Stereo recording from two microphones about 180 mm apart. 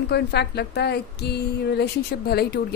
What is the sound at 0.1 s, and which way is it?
A woman's voice, 65° left (ahead or behind).